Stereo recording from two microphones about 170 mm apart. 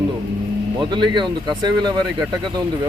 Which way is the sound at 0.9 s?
25° right (ahead or behind).